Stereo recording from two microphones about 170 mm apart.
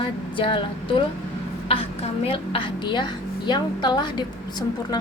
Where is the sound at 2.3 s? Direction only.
30° left (ahead or behind).